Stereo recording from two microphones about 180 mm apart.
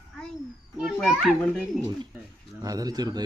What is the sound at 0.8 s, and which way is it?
Speech, centre (ahead or behind).